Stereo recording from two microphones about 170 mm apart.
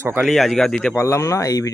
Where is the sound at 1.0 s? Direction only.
15° left (ahead or behind).